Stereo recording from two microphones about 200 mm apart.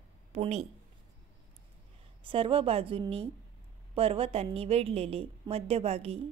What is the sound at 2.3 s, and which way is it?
A woman's voice, 25° right (ahead or behind).